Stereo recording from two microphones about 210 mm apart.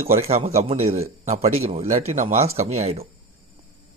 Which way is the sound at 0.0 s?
30° right (ahead or behind).